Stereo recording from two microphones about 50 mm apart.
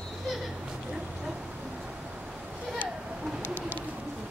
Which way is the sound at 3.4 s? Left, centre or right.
Right.